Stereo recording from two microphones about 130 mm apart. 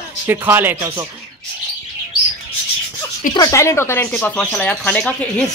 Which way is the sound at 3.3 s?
25° left (ahead or behind).